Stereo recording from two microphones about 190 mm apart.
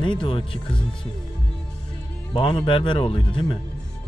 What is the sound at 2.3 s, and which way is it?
Speech, 25° left (ahead or behind).